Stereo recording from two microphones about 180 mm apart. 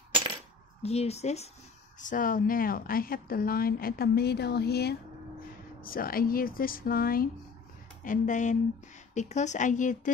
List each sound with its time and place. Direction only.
0.8 s a woman's voice: 35° left (ahead or behind)
2.0 s a woman's voice: 45° left (ahead or behind)